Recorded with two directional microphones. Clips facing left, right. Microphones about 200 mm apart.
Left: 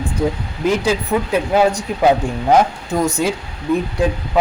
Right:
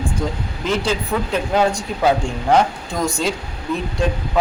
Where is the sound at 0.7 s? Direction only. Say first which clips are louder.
Left 4 dB; 10° left (ahead or behind).